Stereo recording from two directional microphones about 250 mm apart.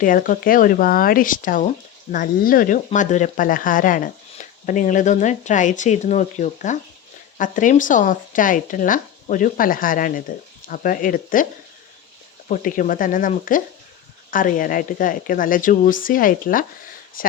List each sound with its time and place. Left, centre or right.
0.0 s speech: left
12.5 s speech: left